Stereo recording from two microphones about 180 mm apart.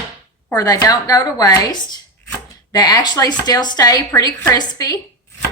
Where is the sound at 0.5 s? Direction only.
20° left (ahead or behind).